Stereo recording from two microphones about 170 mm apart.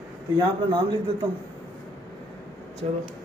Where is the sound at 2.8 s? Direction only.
40° right (ahead or behind).